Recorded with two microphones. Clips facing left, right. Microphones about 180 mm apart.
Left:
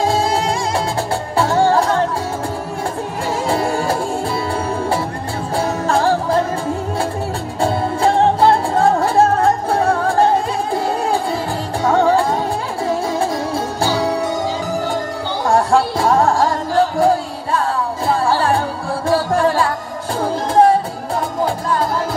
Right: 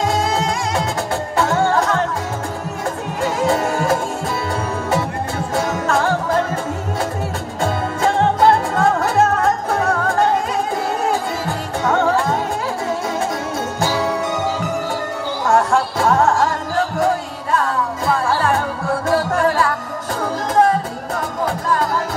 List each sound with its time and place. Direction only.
1.3 s music: 30° left (ahead or behind)
3.4 s music: 30° left (ahead or behind)
5.6 s music: 30° left (ahead or behind)
7.6 s music: 30° left (ahead or behind)
11.8 s music: 35° left (ahead or behind)
13.7 s music: 35° left (ahead or behind)
15.4 s music: 30° left (ahead or behind)